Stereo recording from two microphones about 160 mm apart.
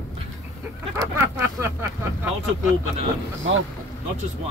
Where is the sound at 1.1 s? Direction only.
15° right (ahead or behind).